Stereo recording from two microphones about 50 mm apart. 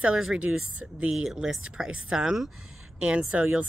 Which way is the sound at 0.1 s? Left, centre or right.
Centre.